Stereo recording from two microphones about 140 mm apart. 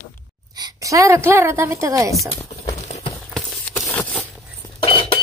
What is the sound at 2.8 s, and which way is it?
Clip-clop, 50° left (ahead or behind).